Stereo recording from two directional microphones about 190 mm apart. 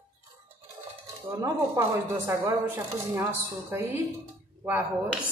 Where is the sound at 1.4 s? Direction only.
15° right (ahead or behind).